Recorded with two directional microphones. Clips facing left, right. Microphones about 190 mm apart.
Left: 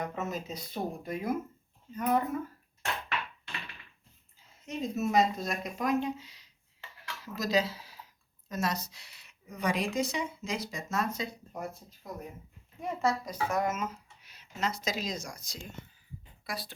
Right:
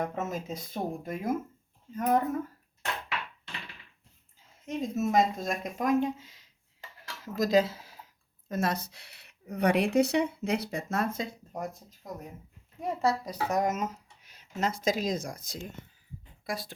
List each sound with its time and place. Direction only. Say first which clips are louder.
0.0 s speech: right 2 dB; 50° right (ahead or behind)
4.6 s speech: right 2 dB; 50° right (ahead or behind)
7.1 s a sound: right 5 dB; 50° right (ahead or behind)
8.4 s speech: right 3 dB; 55° right (ahead or behind)
12.8 s speech: right 2 dB; 35° right (ahead or behind)